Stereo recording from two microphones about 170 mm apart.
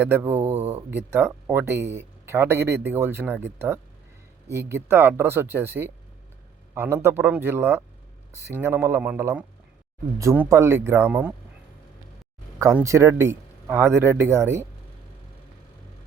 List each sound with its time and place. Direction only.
0.0 s speech: 10° right (ahead or behind)
0.6 s speech: 35° right (ahead or behind)
0.9 s speech: 10° right (ahead or behind)
12.7 s speech: 15° right (ahead or behind)